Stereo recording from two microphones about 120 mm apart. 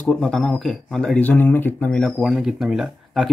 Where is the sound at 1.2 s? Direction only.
15° left (ahead or behind).